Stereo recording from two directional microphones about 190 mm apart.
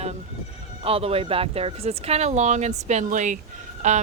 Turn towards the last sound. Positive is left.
turn(degrees=-40)  # may be behind; listen again after turning